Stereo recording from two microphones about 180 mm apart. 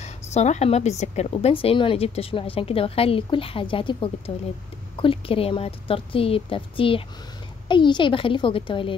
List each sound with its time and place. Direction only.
0.0 s a woman's voice: 40° left (ahead or behind)